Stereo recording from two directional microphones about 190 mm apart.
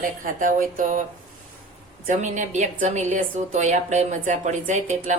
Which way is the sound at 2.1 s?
40° right (ahead or behind).